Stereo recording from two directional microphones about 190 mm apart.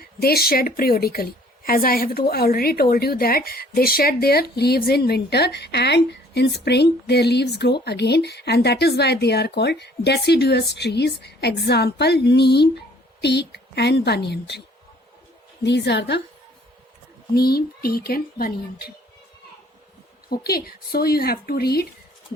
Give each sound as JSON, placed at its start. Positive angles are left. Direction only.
{"t": 0.0, "sound": "a woman's voice", "side_deg": 55}
{"t": 15.6, "sound": "a woman's voice", "side_deg": 65}
{"t": 17.3, "sound": "speech", "side_deg": 55}
{"t": 20.3, "sound": "speech", "side_deg": 55}